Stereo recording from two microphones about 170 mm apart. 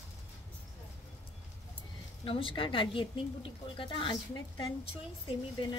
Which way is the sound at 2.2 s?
30° left (ahead or behind).